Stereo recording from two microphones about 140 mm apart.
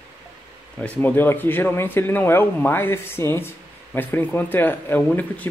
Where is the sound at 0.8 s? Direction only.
10° left (ahead or behind).